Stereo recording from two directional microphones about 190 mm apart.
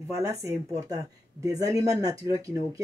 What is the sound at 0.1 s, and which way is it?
Speech, 15° right (ahead or behind).